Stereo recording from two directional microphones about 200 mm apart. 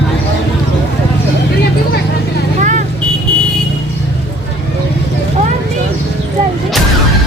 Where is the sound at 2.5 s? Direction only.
40° right (ahead or behind).